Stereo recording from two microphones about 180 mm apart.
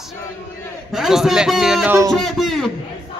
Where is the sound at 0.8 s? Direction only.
Centre (ahead or behind).